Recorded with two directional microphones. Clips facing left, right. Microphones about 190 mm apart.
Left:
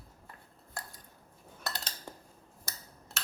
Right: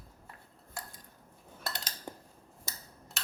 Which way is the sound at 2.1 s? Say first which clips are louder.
Right 3 dB; 10° right (ahead or behind).